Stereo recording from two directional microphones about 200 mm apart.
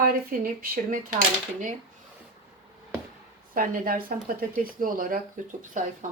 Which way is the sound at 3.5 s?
45° right (ahead or behind).